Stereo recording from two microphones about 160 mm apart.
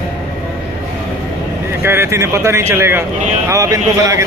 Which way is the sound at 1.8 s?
15° right (ahead or behind).